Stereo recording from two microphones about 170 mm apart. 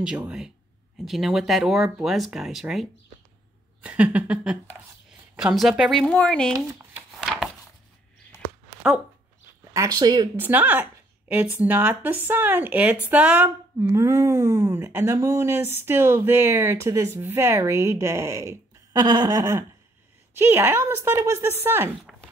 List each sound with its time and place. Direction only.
0.0 s a woman's voice: 5° right (ahead or behind)
6.5 s speech: 15° right (ahead or behind)
9.8 s speech: 25° right (ahead or behind)
10.3 s a woman's voice: 10° right (ahead or behind)